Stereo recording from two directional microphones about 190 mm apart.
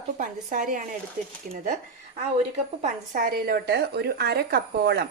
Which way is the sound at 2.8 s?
40° right (ahead or behind).